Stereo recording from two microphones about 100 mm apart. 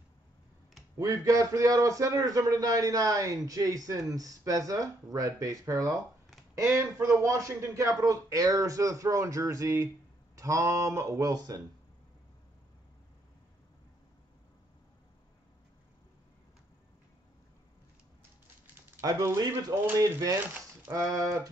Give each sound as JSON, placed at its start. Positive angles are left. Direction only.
{"t": 0.9, "sound": "a man's voice", "side_deg": -35}
{"t": 18.9, "sound": "a man's voice", "side_deg": -35}